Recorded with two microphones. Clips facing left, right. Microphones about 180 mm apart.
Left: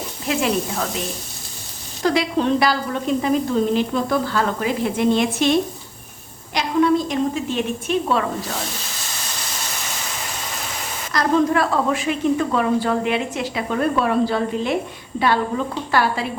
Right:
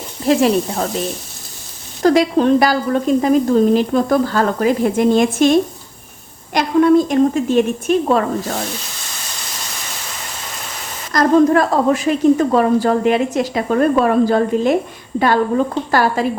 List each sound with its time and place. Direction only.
0.3 s speech: 40° right (ahead or behind)
2.0 s a woman's voice: 45° right (ahead or behind)
11.1 s a woman's voice: 45° right (ahead or behind)